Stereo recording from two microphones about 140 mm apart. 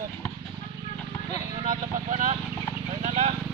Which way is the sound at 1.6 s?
65° right (ahead or behind).